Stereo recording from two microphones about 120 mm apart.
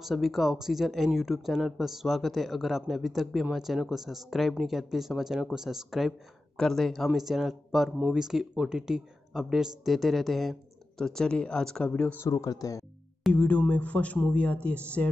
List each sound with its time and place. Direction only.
0.0 s speech: centre (ahead or behind)
12.3 s speech: 30° left (ahead or behind)
13.3 s speech: 15° left (ahead or behind)